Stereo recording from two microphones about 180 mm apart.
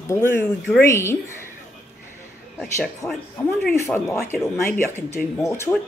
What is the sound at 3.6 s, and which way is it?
Speech, centre (ahead or behind).